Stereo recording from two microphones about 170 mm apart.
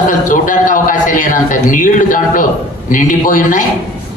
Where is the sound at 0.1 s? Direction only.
50° left (ahead or behind).